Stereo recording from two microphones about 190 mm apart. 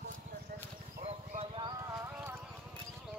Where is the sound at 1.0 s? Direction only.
30° right (ahead or behind).